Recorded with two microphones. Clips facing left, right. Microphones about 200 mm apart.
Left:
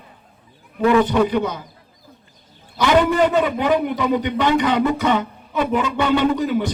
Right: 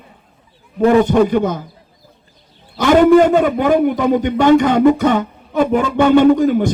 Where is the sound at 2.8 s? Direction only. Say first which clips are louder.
Right 7 dB; 50° right (ahead or behind).